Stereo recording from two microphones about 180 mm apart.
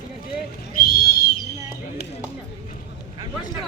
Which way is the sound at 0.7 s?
55° left (ahead or behind).